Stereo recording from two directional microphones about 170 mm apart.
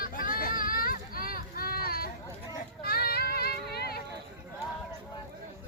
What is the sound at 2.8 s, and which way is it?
Child singing, 65° left (ahead or behind).